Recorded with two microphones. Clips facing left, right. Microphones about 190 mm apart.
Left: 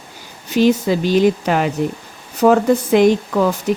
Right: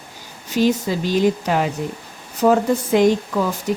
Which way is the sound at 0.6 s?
65° left (ahead or behind).